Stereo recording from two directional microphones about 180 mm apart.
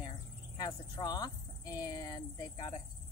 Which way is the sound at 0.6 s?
20° left (ahead or behind).